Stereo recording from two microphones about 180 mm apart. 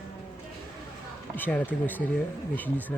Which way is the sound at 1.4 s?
10° left (ahead or behind).